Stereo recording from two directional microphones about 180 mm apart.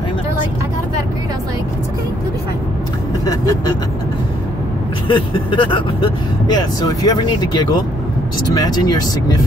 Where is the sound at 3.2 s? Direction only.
20° left (ahead or behind).